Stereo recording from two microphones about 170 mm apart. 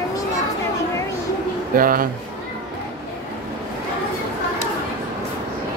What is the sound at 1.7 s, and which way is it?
Speech, 55° right (ahead or behind).